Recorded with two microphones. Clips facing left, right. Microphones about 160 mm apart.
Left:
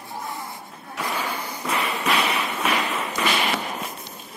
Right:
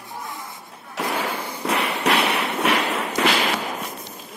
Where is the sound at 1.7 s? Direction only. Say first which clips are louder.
Right 3 dB; 75° right (ahead or behind).